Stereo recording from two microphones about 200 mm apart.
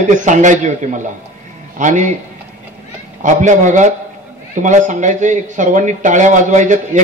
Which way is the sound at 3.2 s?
40° right (ahead or behind).